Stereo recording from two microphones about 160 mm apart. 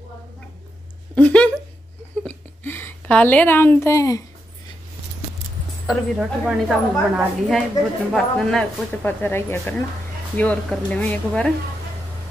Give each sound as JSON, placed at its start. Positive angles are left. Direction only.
{"t": 1.1, "sound": "speech", "side_deg": 10}
{"t": 2.2, "sound": "a sound", "side_deg": 15}
{"t": 5.9, "sound": "a woman's voice", "side_deg": -5}